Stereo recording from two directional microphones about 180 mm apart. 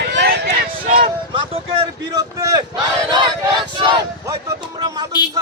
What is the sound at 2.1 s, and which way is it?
Speech, 20° right (ahead or behind).